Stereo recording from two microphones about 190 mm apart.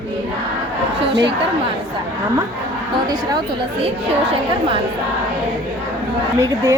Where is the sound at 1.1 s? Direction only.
65° right (ahead or behind).